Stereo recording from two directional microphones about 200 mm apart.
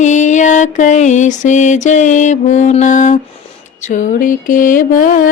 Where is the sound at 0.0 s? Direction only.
35° left (ahead or behind).